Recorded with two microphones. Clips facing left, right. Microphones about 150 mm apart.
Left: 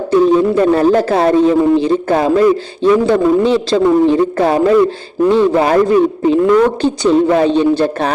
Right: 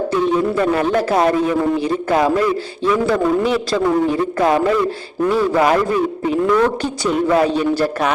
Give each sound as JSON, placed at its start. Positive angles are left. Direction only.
{"t": 0.1, "sound": "a man's voice", "side_deg": 30}